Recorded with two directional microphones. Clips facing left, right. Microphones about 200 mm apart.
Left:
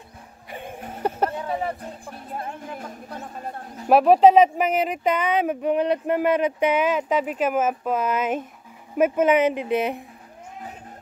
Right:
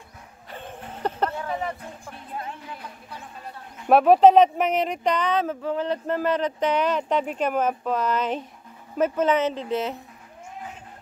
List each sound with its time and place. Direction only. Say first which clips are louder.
0.5 s dog: left 3 dB; 10° left (ahead or behind)
1.6 s music: left 2 dB; 30° left (ahead or behind)
3.9 s speech: even; centre (ahead or behind)